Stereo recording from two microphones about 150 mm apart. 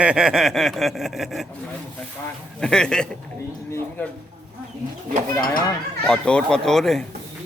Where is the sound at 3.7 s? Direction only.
15° left (ahead or behind).